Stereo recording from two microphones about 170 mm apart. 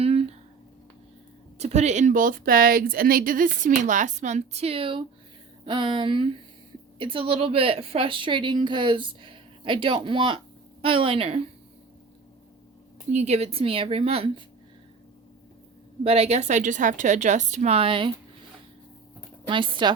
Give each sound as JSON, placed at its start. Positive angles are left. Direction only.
{"t": 0.0, "sound": "a sound", "side_deg": -35}
{"t": 1.5, "sound": "a woman's voice", "side_deg": -40}
{"t": 13.1, "sound": "speech", "side_deg": -40}
{"t": 16.0, "sound": "a woman's voice", "side_deg": -35}
{"t": 19.5, "sound": "a woman's voice", "side_deg": -30}